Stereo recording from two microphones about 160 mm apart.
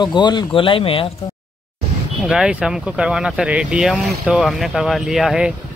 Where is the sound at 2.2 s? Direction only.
5° right (ahead or behind).